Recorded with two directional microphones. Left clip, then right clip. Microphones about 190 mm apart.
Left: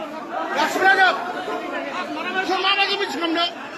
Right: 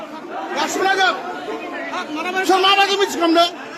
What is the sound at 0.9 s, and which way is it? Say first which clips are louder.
Speech: left 2 dB; 15° right (ahead or behind).